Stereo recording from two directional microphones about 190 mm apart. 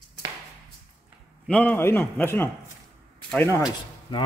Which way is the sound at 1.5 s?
10° left (ahead or behind).